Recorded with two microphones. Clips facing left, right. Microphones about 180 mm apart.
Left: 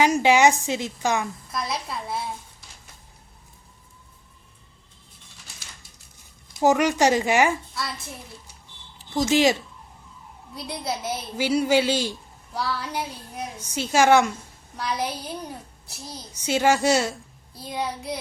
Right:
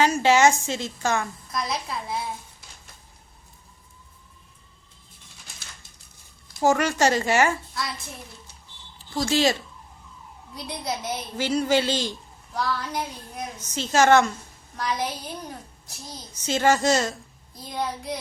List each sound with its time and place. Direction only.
0.0 s a child's voice: 15° left (ahead or behind)
1.5 s a woman's voice: centre (ahead or behind)
6.6 s a child's voice: 15° left (ahead or behind)
9.1 s a child's voice: 15° left (ahead or behind)
10.5 s a child's voice: 5° left (ahead or behind)